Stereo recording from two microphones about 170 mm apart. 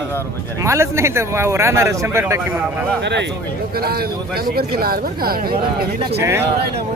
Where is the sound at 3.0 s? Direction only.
90° right.